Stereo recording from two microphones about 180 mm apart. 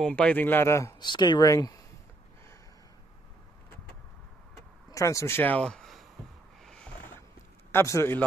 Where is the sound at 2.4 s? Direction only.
15° left (ahead or behind).